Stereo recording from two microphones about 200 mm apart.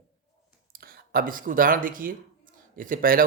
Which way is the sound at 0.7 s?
45° right (ahead or behind).